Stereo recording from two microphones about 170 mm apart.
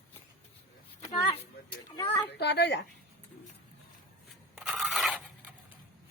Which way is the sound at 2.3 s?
80° left.